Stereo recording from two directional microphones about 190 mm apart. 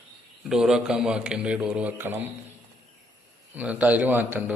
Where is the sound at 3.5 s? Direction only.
10° right (ahead or behind).